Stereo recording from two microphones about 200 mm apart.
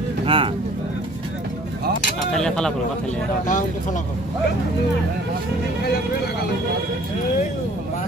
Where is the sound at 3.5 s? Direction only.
40° left (ahead or behind).